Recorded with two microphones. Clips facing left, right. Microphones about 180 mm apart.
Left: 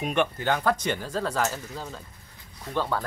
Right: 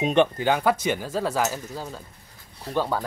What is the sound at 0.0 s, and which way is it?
Speech, 20° right (ahead or behind).